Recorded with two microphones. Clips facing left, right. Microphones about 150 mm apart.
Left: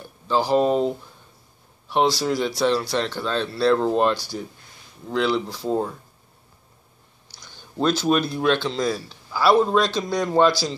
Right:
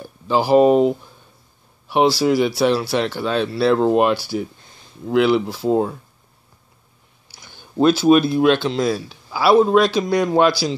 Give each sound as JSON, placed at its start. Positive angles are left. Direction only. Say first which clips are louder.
{"t": 0.3, "sound": "speech", "louder": "right 6 dB", "side_deg": -10}
{"t": 7.2, "sound": "a sound", "louder": "right 2 dB", "side_deg": -55}
{"t": 7.7, "sound": "speech", "louder": "right 7 dB", "side_deg": -10}